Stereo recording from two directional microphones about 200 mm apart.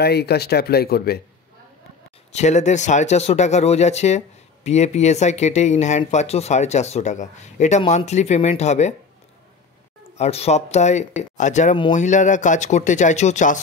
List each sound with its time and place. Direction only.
0.0 s speech: 55° left (ahead or behind)
2.3 s speech: 35° left (ahead or behind)
10.1 s speech: 30° left (ahead or behind)